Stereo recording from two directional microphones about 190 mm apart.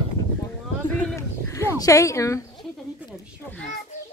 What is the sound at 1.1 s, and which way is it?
Sheep, 15° left (ahead or behind).